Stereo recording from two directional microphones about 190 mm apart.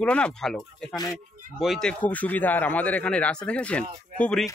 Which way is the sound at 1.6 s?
Centre (ahead or behind).